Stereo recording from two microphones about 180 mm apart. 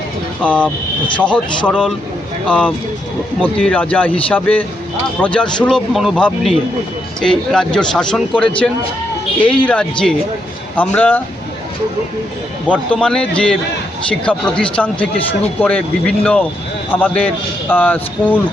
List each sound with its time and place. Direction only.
1.1 s a man's voice: 5° left (ahead or behind)
12.9 s a man's voice: 5° left (ahead or behind)